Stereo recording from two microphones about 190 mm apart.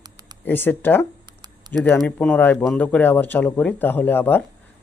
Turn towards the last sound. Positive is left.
turn(degrees=10)  # may be behind; listen again after turning